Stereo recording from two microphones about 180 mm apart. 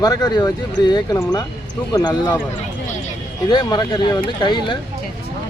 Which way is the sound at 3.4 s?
25° left (ahead or behind).